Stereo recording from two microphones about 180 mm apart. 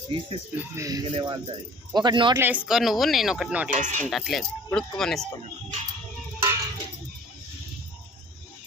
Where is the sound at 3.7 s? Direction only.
45° right (ahead or behind).